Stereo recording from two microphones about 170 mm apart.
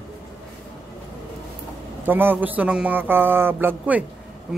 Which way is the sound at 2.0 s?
10° right (ahead or behind).